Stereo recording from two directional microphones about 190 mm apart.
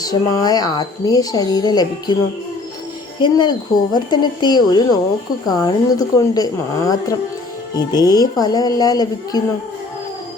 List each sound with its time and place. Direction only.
0.0 s speech: 20° left (ahead or behind)
3.2 s speech: 25° left (ahead or behind)